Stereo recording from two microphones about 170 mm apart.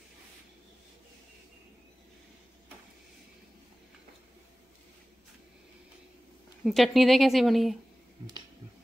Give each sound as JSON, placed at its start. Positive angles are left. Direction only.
{"t": 6.6, "sound": "speech", "side_deg": 0}